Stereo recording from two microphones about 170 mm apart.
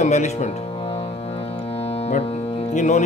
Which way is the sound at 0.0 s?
45° left (ahead or behind).